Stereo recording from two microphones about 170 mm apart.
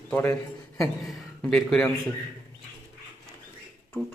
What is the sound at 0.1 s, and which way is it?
Speech, 15° left (ahead or behind).